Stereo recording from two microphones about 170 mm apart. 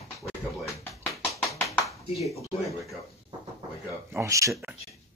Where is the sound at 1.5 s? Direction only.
10° left (ahead or behind).